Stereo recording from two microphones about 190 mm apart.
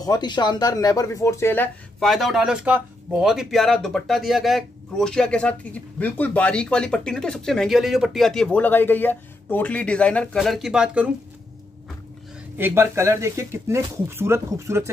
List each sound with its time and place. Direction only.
0.0 s speech: 20° left (ahead or behind); by 11.1 s 5° right (ahead or behind)
12.5 s speech: 10° right (ahead or behind)